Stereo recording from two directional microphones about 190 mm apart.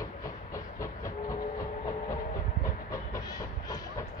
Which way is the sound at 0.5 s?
15° left (ahead or behind).